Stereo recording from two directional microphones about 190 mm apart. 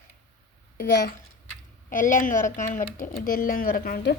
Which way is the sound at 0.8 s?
50° left (ahead or behind).